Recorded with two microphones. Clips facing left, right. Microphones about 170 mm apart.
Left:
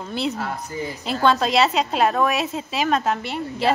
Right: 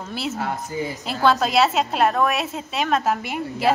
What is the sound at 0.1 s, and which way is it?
A woman's voice, 5° right (ahead or behind).